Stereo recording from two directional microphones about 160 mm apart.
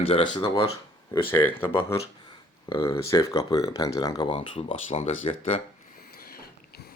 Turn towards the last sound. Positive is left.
turn(degrees=40)  # may be behind; listen again after turning